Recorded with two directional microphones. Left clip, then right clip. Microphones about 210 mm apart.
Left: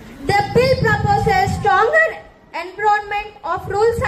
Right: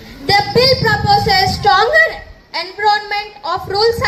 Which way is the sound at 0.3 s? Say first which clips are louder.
Right 3 dB; 40° right (ahead or behind).